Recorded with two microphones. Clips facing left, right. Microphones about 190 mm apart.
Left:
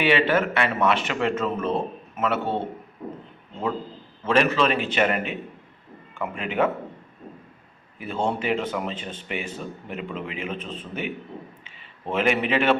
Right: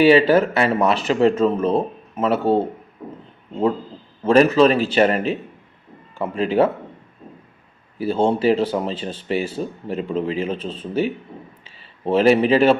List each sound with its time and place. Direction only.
0.0 s speech: 35° right (ahead or behind)
4.2 s speech: 35° right (ahead or behind)
7.9 s speech: 35° right (ahead or behind)
11.6 s a sound: 35° right (ahead or behind)